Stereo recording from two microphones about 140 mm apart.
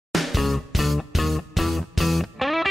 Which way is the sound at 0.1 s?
Centre (ahead or behind).